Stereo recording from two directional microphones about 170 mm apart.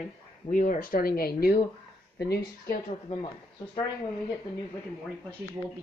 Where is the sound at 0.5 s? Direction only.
55° left (ahead or behind).